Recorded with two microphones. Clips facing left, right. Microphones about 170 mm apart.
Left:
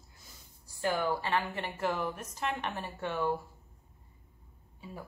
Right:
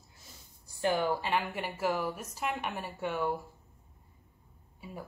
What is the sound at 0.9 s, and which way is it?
Speech, 15° right (ahead or behind).